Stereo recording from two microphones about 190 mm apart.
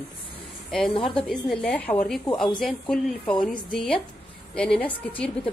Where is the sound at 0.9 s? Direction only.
25° left (ahead or behind).